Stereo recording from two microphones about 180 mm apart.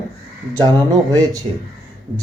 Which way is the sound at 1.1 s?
20° right (ahead or behind).